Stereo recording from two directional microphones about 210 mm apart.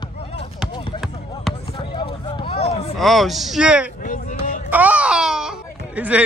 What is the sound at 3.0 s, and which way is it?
Speech, centre (ahead or behind).